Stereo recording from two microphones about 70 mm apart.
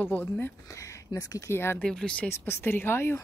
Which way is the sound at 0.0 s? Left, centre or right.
Left.